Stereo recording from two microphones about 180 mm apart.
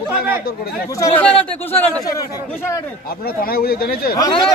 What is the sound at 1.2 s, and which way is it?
A man's voice, 10° left (ahead or behind).